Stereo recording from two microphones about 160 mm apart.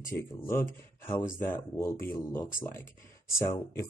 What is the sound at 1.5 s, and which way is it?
Speech, 15° left (ahead or behind).